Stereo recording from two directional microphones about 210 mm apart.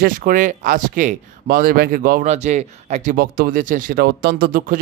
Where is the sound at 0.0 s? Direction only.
40° right (ahead or behind).